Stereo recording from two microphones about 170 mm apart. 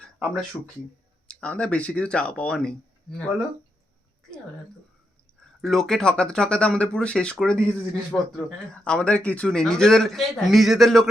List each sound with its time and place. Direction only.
0.0 s a sound: centre (ahead or behind)
1.3 s speech: 10° left (ahead or behind)
5.6 s speech: centre (ahead or behind)